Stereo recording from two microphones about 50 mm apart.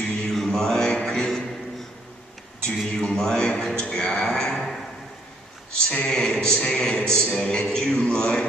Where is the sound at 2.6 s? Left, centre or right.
Centre.